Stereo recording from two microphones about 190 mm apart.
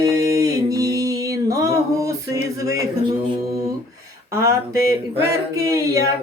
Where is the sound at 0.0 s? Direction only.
20° right (ahead or behind).